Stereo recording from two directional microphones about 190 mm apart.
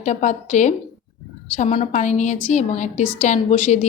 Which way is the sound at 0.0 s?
40° left (ahead or behind).